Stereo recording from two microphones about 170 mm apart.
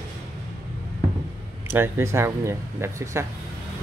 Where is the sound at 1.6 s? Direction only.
15° right (ahead or behind).